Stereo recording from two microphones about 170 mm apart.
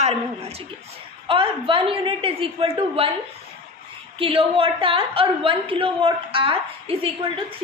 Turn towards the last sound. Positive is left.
turn(degrees=-35)  # may be behind; listen again after turning